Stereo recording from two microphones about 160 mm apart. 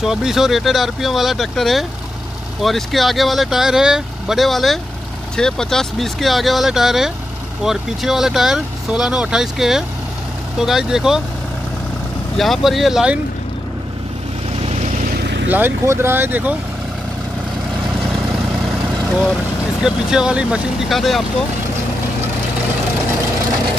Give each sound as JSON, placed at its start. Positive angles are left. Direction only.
{"t": 0.0, "sound": "speech", "side_deg": -5}
{"t": 12.4, "sound": "speech", "side_deg": 0}
{"t": 14.6, "sound": "vehicle", "side_deg": -45}
{"t": 15.1, "sound": "vehicle", "side_deg": -90}
{"t": 15.4, "sound": "speech", "side_deg": -10}
{"t": 19.8, "sound": "speech", "side_deg": -5}